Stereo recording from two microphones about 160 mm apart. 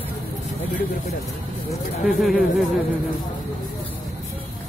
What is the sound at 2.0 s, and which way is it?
Speech, centre (ahead or behind).